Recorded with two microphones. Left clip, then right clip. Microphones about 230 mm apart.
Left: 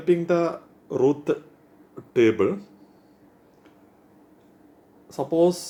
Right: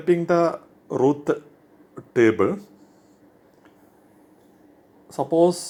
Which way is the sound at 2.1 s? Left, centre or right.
Centre.